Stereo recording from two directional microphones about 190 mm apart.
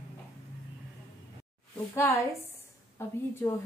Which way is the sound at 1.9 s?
15° left (ahead or behind).